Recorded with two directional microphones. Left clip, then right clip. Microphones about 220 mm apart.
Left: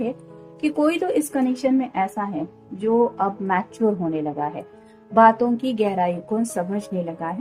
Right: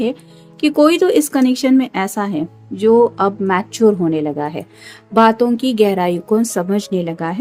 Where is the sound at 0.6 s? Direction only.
40° right (ahead or behind).